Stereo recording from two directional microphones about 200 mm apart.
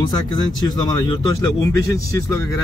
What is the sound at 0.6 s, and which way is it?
Speech, 20° left (ahead or behind).